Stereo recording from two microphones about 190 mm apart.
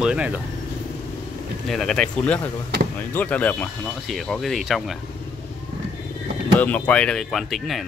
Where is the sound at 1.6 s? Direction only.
Centre (ahead or behind).